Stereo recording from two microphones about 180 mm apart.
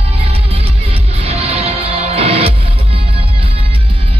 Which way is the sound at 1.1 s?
35° right (ahead or behind).